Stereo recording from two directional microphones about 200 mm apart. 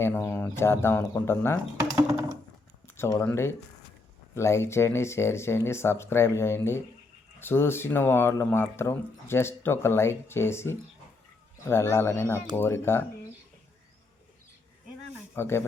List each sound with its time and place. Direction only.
0.0 s speech: 10° left (ahead or behind)
2.8 s speech: 10° left (ahead or behind)
15.4 s speech: 10° left (ahead or behind)